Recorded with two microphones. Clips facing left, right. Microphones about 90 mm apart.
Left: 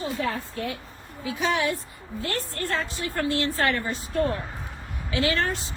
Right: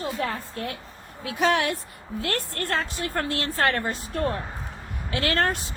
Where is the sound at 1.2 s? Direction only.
70° right (ahead or behind).